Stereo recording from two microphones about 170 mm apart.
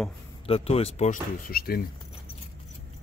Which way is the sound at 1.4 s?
60° left (ahead or behind).